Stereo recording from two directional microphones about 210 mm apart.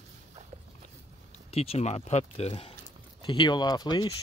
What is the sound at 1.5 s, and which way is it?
Speech, 30° left (ahead or behind).